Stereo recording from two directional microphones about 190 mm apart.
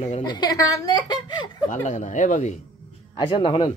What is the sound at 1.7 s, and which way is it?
Speech, 40° left (ahead or behind).